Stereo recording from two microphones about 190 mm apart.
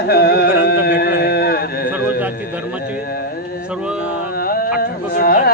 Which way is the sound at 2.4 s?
10° right (ahead or behind).